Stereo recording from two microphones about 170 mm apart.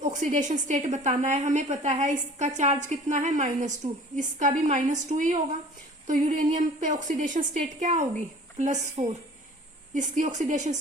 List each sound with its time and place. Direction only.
0.0 s a woman's voice: 50° right (ahead or behind)